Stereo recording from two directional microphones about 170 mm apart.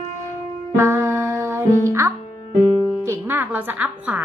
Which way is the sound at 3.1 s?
15° right (ahead or behind).